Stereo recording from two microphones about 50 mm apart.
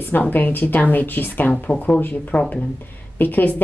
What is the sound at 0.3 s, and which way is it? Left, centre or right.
Speech, left.